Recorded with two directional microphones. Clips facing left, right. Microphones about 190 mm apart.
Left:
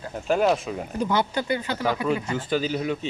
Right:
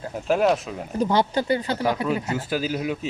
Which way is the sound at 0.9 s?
35° right (ahead or behind).